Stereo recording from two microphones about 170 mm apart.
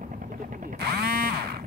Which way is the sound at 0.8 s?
65° right (ahead or behind).